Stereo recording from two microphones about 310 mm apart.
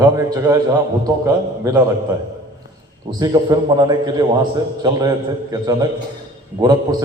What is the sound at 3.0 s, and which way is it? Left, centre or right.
A man's voice, centre.